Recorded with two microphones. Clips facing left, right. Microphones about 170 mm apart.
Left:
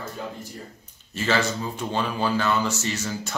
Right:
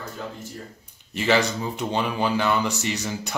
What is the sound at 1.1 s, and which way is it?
Speech, 15° right (ahead or behind).